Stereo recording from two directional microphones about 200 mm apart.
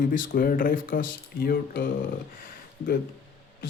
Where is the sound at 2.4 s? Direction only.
45° left (ahead or behind).